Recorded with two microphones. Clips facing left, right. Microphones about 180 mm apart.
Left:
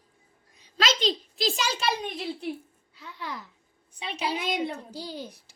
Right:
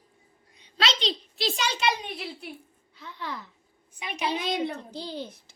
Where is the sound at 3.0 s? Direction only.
10° left (ahead or behind).